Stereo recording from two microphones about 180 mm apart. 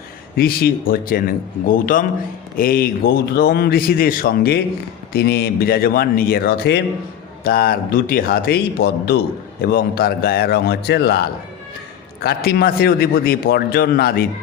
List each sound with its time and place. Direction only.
0.3 s a man's voice: 55° left (ahead or behind)